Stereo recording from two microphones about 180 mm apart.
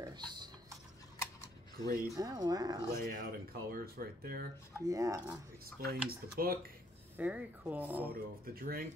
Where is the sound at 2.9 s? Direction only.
55° right (ahead or behind).